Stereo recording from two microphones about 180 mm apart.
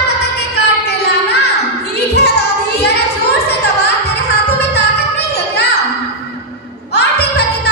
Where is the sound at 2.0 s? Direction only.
65° left (ahead or behind).